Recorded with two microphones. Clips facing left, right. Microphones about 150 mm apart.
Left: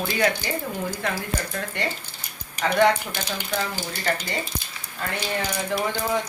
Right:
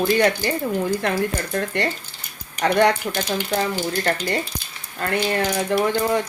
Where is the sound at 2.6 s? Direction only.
65° right (ahead or behind).